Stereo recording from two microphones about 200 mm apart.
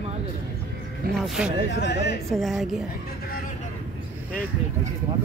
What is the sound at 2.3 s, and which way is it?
Speech, centre (ahead or behind).